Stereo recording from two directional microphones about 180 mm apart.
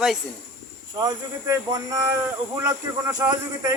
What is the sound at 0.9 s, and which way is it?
Speech, 20° right (ahead or behind).